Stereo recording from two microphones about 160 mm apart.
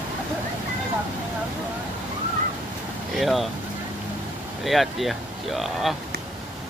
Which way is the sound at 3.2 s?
Centre (ahead or behind).